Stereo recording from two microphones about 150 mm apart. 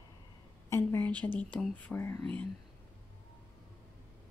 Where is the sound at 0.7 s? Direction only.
15° left (ahead or behind).